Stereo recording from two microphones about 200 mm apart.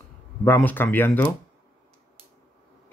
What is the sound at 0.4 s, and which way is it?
Speech, 10° left (ahead or behind).